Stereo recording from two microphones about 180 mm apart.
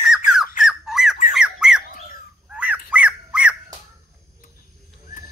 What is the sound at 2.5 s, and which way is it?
Bird, 5° right (ahead or behind).